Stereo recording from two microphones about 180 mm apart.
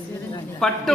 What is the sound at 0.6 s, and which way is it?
Speech, centre (ahead or behind).